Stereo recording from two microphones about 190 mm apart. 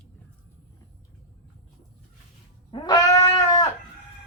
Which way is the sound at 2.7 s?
20° left (ahead or behind).